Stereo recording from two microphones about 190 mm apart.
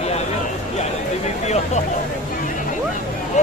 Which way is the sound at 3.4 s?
40° left (ahead or behind).